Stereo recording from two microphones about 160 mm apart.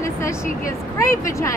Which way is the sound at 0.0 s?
20° left (ahead or behind).